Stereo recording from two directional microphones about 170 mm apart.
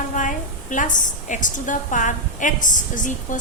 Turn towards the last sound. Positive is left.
turn(degrees=50)  # may be behind; listen again after turning